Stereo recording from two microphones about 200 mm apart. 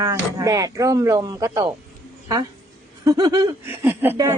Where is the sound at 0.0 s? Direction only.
15° right (ahead or behind).